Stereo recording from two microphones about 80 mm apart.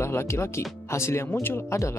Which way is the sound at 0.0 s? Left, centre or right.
Left.